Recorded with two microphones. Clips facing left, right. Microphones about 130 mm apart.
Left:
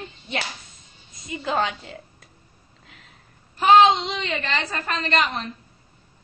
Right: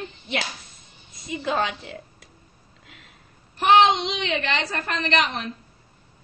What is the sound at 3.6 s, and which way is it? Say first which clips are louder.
A woman's voice: left 2 dB; 70° right (ahead or behind).